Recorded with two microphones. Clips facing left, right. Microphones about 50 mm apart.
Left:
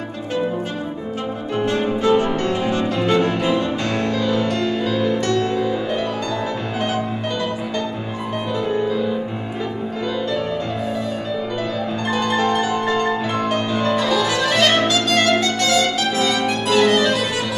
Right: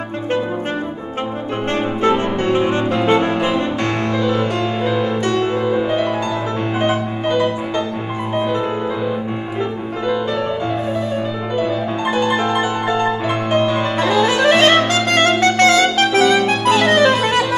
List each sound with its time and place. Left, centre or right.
1.7 s music: right
10.0 s music: right
11.5 s music: centre; by 17.6 s right